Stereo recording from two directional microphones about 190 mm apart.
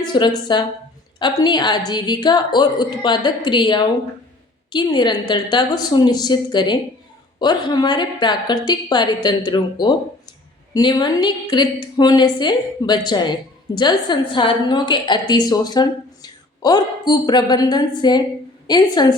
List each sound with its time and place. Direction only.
0.1 s a woman's voice: 25° left (ahead or behind)